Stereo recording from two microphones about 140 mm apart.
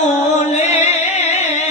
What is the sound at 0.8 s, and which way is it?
Music, 55° left (ahead or behind).